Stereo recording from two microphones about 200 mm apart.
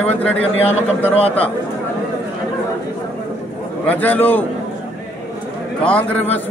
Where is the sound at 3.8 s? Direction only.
10° left (ahead or behind).